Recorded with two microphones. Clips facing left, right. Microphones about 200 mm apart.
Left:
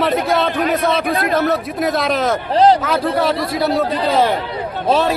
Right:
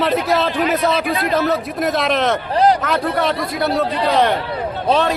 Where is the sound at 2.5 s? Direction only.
30° left (ahead or behind).